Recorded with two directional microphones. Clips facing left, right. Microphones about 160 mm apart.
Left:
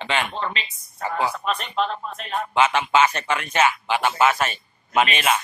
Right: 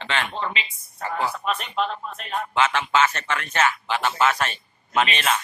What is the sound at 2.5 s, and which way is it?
A man's voice, 15° left (ahead or behind).